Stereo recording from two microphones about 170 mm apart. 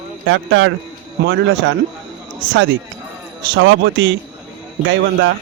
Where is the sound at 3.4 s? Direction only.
90° right.